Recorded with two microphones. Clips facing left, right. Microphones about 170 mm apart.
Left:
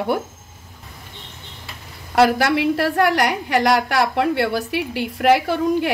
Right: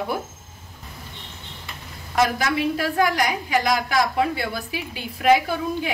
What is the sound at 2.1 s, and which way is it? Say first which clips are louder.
A woman's voice: left 6 dB; 70° left (ahead or behind).